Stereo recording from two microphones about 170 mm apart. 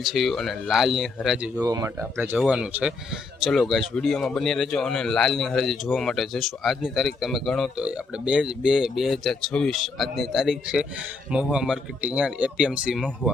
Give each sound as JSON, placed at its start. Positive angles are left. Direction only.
{"t": 0.0, "sound": "speech", "side_deg": 0}
{"t": 1.6, "sound": "speech", "side_deg": -20}